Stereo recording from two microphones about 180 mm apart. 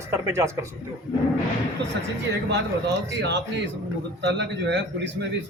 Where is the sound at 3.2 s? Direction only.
70° right (ahead or behind).